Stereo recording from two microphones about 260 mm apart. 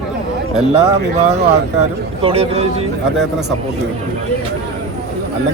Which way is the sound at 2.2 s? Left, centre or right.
Right.